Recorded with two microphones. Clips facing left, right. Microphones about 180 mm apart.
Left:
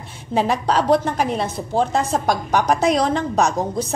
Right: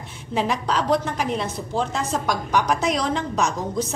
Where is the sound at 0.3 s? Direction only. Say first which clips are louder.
Left 4 dB; 35° left (ahead or behind).